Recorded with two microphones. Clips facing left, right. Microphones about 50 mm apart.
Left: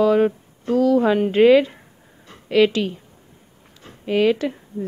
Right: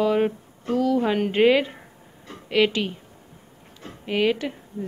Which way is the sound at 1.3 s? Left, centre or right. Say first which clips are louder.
Left 5 dB; centre.